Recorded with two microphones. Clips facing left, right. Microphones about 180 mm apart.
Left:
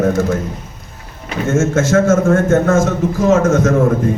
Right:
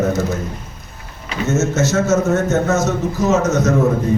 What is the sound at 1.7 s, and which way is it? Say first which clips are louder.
Speech: left 4 dB; 50° left (ahead or behind).